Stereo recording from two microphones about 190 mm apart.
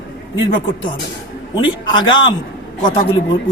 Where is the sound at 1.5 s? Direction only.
25° left (ahead or behind).